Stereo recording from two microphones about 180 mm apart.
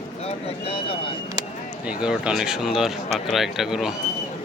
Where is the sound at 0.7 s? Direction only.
30° left (ahead or behind).